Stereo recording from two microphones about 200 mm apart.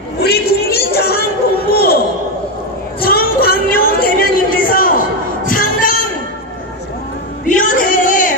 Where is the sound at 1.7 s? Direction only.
50° left (ahead or behind).